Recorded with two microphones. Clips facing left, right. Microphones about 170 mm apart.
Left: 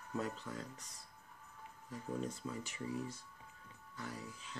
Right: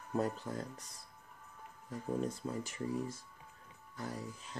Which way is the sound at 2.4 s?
45° right (ahead or behind).